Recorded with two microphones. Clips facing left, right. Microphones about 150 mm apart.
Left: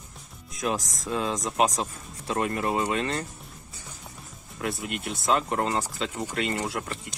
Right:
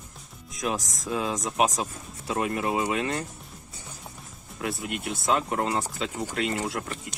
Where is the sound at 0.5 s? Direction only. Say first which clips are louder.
Left 1 dB; centre (ahead or behind).